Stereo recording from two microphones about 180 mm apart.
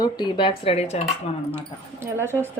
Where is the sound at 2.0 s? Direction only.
15° right (ahead or behind).